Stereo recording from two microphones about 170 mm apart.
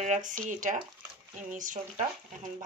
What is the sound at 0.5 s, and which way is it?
Speech, 50° right (ahead or behind).